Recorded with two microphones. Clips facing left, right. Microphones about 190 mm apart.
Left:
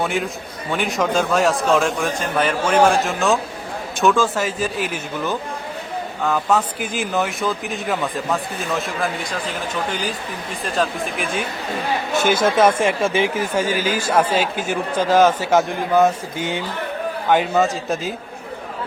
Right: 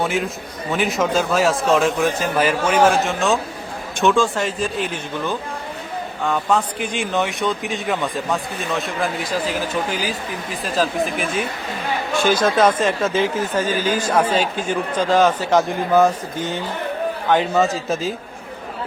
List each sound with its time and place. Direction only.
0.0 s speech: centre (ahead or behind)
12.1 s speech: 25° left (ahead or behind)
12.5 s speech: 10° left (ahead or behind)
17.2 s speech: 5° left (ahead or behind)